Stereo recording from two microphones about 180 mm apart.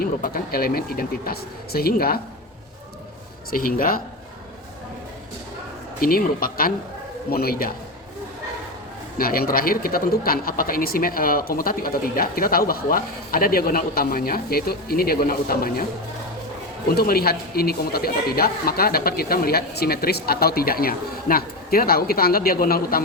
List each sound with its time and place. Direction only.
0.0 s speech: 55° left (ahead or behind)
3.5 s speech: 50° left (ahead or behind)
6.0 s speech: 55° left (ahead or behind)
9.1 s speech: 55° left (ahead or behind)
16.9 s speech: 60° left (ahead or behind)